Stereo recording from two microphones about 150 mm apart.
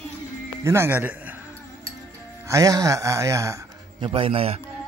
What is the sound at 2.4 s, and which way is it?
A woman's voice, 20° right (ahead or behind).